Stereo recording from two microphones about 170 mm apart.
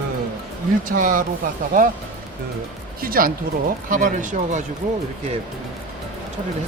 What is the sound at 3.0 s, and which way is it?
Speech, 60° right (ahead or behind).